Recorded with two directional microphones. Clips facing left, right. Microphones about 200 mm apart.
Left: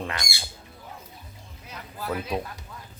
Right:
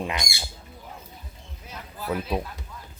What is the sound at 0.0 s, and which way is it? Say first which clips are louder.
Speech: right 3 dB; 15° right (ahead or behind).